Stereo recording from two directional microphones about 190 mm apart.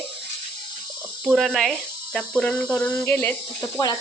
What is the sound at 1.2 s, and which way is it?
Speech, centre (ahead or behind).